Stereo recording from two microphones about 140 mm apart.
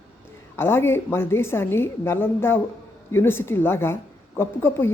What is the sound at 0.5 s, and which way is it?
A woman's voice, 15° left (ahead or behind).